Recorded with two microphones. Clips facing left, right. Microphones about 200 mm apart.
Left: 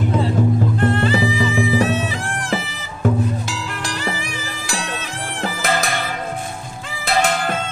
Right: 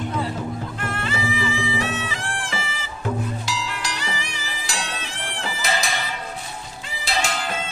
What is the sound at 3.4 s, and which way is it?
Music, 55° left (ahead or behind).